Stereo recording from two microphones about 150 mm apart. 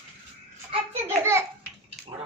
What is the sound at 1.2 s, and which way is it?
Speech, 15° right (ahead or behind).